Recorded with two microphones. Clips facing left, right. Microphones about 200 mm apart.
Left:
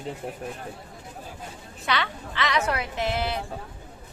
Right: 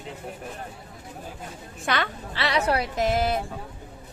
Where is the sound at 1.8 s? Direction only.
50° right (ahead or behind).